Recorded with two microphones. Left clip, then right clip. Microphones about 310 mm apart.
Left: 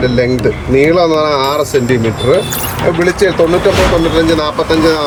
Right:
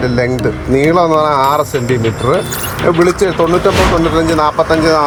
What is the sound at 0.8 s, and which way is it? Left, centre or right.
Speech, centre.